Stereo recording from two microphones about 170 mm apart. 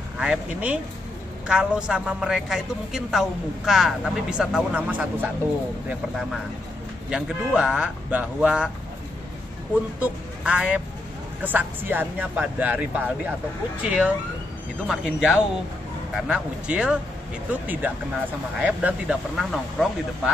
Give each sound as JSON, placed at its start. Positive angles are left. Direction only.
{"t": 0.2, "sound": "a woman's voice", "side_deg": -5}
{"t": 9.9, "sound": "a woman's voice", "side_deg": -5}